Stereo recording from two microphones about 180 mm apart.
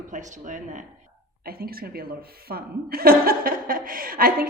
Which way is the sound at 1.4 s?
55° right (ahead or behind).